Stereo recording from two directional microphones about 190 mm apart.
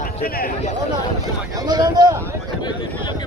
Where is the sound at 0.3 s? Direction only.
50° left (ahead or behind).